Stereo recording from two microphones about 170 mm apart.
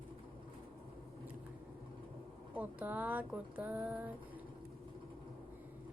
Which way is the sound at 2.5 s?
10° right (ahead or behind).